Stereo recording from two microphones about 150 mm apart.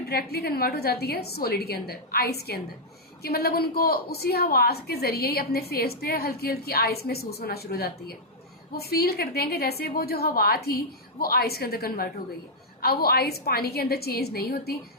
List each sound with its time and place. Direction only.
0.1 s a woman's voice: 90° left